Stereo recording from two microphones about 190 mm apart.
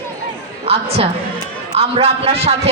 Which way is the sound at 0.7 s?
30° right (ahead or behind).